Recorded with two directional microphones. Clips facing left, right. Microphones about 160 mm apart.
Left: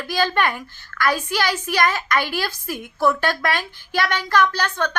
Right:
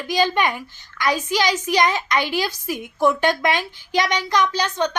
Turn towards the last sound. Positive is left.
turn(degrees=-15)  # may be behind; listen again after turning